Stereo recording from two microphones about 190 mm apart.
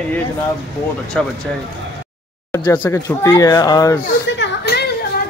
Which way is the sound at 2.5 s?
15° left (ahead or behind).